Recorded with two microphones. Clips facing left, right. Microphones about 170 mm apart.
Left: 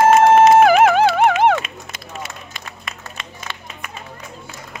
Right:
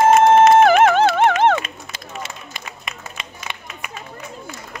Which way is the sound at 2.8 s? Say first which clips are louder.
Even; 20° right (ahead or behind).